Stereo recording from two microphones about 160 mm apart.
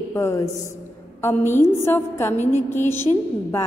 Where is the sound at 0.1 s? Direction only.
20° left (ahead or behind).